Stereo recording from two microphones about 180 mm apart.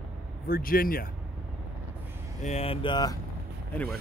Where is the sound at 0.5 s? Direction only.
55° left (ahead or behind).